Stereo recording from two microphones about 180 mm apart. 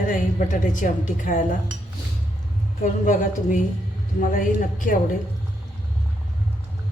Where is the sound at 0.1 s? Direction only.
45° left (ahead or behind).